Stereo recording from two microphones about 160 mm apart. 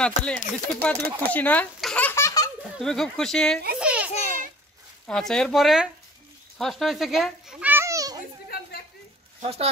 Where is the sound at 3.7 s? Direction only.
5° right (ahead or behind).